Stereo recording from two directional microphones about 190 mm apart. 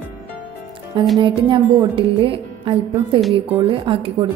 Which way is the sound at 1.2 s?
25° right (ahead or behind).